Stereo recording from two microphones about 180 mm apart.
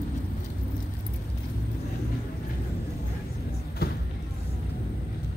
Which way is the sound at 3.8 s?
60° left (ahead or behind).